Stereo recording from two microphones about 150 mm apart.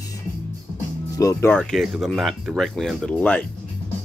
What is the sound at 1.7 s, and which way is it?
Speech, centre (ahead or behind).